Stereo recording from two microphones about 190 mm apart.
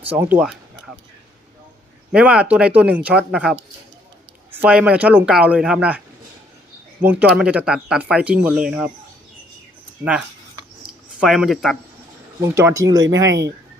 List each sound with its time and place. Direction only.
0.0 s speech: 10° right (ahead or behind)
2.1 s speech: 5° right (ahead or behind)
7.0 s speech: 10° right (ahead or behind)
10.0 s speech: 5° right (ahead or behind)
12.4 s speech: 15° right (ahead or behind)